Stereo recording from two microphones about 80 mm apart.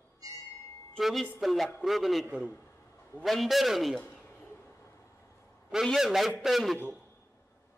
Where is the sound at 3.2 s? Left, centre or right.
Centre.